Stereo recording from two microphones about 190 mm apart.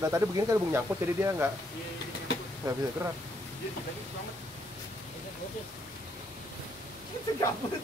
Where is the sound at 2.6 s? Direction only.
20° right (ahead or behind).